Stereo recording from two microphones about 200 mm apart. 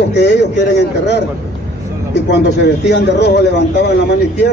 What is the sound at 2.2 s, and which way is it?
A man's voice, 60° left (ahead or behind).